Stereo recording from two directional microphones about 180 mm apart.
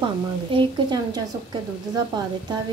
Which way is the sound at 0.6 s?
25° right (ahead or behind).